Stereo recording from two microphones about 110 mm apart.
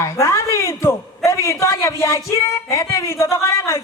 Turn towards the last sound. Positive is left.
turn(degrees=30)  # may be behind; listen again after turning